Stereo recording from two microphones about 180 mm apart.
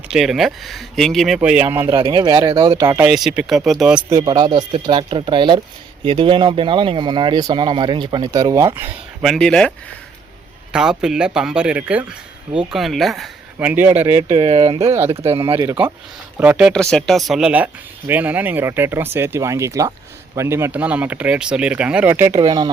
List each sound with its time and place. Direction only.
0.1 s speech: centre (ahead or behind)
2.0 s speech: 25° right (ahead or behind)
3.0 s speech: centre (ahead or behind)
4.1 s speech: 25° right (ahead or behind)
9.2 s speech: centre (ahead or behind)
14.3 s speech: 30° right (ahead or behind)
16.4 s speech: 5° right (ahead or behind)
22.4 s speech: 25° right (ahead or behind)